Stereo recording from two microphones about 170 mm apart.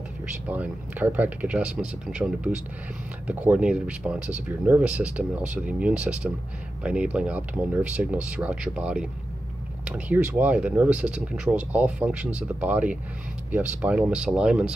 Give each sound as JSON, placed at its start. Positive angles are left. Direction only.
{"t": 0.5, "sound": "speech", "side_deg": -10}